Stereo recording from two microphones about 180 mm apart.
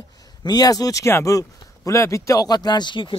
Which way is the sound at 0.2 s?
20° left (ahead or behind).